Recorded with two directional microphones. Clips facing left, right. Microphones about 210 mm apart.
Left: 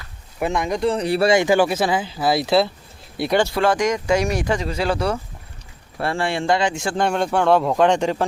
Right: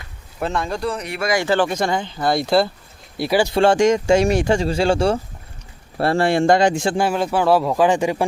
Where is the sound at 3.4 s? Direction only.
25° right (ahead or behind).